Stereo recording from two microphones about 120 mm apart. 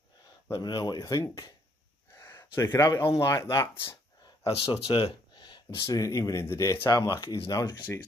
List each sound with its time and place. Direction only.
0.5 s speech: 35° left (ahead or behind)
4.5 s speech: 50° left (ahead or behind)
5.8 s speech: 25° left (ahead or behind)